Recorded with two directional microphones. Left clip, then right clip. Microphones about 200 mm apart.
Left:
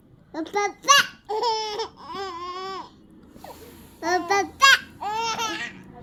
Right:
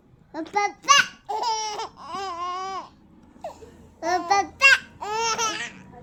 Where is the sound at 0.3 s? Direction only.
5° right (ahead or behind).